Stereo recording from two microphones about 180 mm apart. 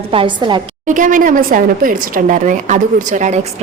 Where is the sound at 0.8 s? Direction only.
45° right (ahead or behind).